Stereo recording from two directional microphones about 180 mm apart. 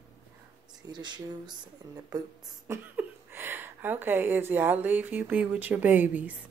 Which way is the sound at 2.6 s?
10° right (ahead or behind).